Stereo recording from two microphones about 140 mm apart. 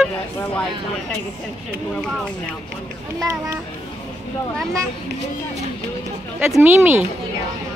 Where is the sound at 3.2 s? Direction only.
20° right (ahead or behind).